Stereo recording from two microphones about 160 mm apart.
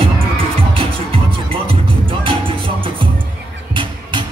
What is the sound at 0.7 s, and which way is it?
Music, 35° right (ahead or behind).